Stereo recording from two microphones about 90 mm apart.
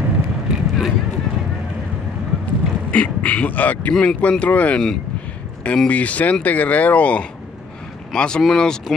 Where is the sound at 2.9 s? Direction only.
15° left (ahead or behind).